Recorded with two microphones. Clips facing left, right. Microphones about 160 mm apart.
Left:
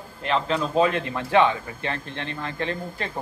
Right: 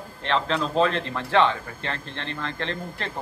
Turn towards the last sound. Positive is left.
turn(degrees=15)  # may be behind; listen again after turning